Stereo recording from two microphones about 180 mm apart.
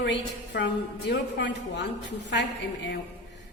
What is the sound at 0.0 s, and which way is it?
A woman's voice, 75° left (ahead or behind).